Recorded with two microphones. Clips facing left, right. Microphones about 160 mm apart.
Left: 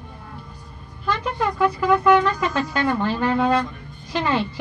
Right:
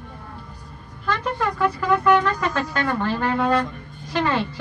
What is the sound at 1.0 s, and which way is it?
Speech, 15° left (ahead or behind).